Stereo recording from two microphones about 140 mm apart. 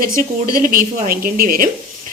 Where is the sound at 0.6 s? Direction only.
80° right.